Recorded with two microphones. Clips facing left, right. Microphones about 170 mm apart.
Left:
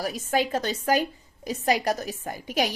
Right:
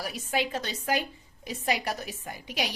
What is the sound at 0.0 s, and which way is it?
A woman's voice, 40° left (ahead or behind).